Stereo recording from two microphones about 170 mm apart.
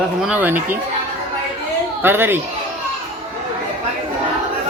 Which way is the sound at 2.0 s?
10° right (ahead or behind).